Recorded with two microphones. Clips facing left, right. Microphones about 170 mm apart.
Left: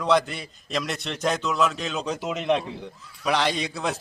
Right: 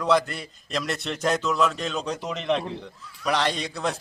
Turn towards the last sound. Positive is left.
turn(degrees=0)  # may be behind; listen again after turning